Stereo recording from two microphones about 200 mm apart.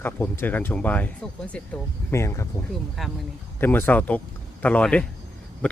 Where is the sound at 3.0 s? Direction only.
Centre (ahead or behind).